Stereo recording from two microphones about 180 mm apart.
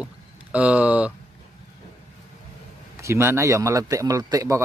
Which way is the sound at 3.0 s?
15° right (ahead or behind).